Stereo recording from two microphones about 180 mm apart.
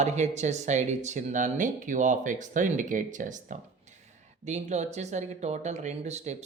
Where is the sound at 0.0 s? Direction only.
40° right (ahead or behind).